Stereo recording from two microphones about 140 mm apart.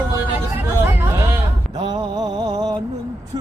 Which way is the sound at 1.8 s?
35° right (ahead or behind).